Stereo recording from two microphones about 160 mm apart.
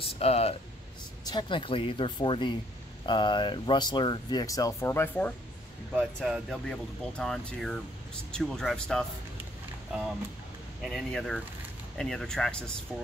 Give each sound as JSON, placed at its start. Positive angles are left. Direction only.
{"t": 0.2, "sound": "speech", "side_deg": 40}
{"t": 1.2, "sound": "speech", "side_deg": 30}
{"t": 10.8, "sound": "speech", "side_deg": 0}